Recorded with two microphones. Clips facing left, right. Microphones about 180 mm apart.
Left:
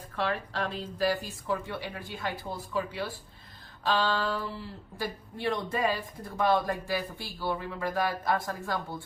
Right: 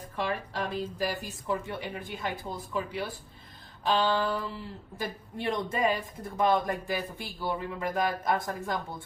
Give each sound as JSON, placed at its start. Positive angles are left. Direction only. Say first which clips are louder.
{"t": 0.2, "sound": "a woman's voice", "louder": "left 1 dB", "side_deg": -15}
{"t": 3.8, "sound": "a woman's voice", "louder": "right 2 dB", "side_deg": -20}